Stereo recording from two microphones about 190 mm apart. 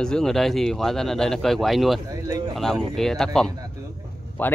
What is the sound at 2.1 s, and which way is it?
Speech, 15° right (ahead or behind).